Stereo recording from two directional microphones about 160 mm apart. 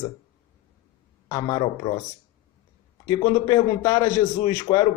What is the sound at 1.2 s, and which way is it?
Speech, 25° left (ahead or behind).